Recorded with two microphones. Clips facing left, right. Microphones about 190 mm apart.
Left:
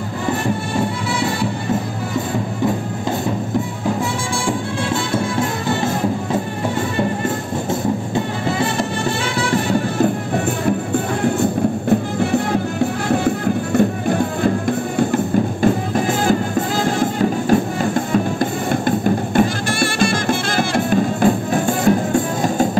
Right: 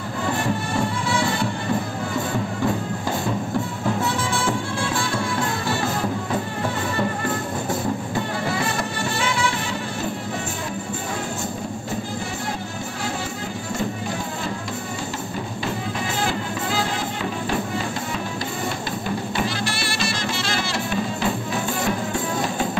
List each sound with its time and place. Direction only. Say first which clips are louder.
10.9 s music: left 10 dB; 60° left (ahead or behind)
13.7 s music: left 10 dB; 55° left (ahead or behind)